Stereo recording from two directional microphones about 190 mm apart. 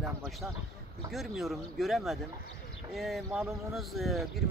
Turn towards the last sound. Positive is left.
turn(degrees=0)  # may be behind; listen again after turning